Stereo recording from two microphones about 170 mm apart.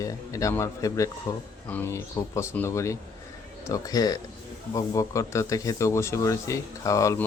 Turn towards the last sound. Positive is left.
turn(degrees=20)  # may be behind; listen again after turning